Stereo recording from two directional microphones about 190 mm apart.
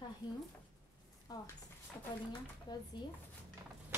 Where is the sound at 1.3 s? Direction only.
20° left (ahead or behind).